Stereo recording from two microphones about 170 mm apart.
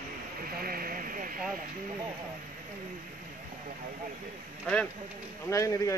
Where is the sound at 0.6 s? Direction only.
60° right (ahead or behind).